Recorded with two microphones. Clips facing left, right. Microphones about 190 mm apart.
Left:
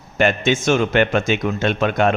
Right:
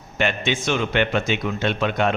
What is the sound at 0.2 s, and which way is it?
Speech, 45° left (ahead or behind).